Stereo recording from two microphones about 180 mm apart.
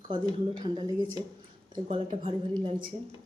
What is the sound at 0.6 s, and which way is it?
Speech, 25° right (ahead or behind).